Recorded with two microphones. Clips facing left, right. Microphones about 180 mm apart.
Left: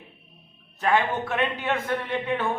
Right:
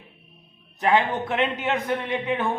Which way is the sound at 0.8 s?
15° right (ahead or behind).